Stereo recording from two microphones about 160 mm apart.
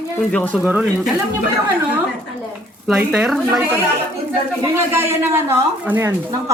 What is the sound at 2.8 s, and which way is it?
Speech, 5° right (ahead or behind).